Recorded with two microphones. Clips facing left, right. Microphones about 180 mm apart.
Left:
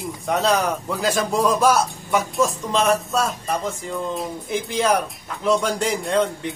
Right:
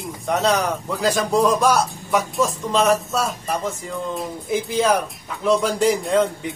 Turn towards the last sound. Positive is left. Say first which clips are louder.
# right 3 dB
turn(degrees=0)  # may be behind; listen again after turning